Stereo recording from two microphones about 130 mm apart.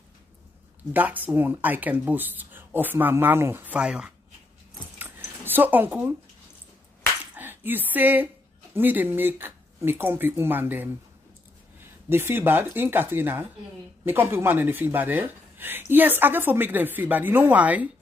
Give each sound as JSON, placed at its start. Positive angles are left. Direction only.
{"t": 0.9, "sound": "speech", "side_deg": -15}
{"t": 4.9, "sound": "squish", "side_deg": -15}
{"t": 7.3, "sound": "speech", "side_deg": -15}
{"t": 12.1, "sound": "speech", "side_deg": -15}